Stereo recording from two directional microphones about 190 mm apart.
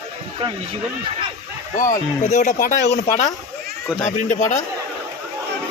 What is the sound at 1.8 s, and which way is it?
Speech, 45° left (ahead or behind).